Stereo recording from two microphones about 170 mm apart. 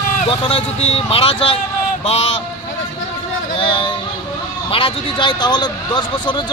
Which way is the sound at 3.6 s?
30° left (ahead or behind).